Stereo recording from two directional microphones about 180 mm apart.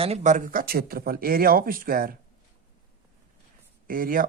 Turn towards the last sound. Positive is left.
turn(degrees=-50)  # may be behind; listen again after turning